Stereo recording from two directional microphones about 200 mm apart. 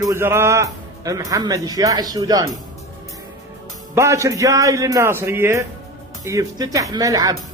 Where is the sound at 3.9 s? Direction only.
15° right (ahead or behind).